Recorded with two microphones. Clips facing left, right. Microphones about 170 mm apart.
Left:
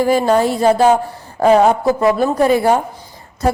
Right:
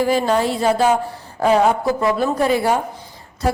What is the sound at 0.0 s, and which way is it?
A woman's voice, 45° left (ahead or behind).